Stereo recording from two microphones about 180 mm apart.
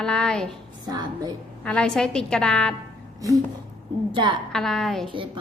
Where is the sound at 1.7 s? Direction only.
5° left (ahead or behind).